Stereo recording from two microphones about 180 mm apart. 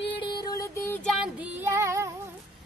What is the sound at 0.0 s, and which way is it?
Music, 25° left (ahead or behind).